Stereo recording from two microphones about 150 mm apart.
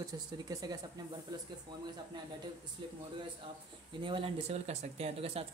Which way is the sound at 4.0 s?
35° right (ahead or behind).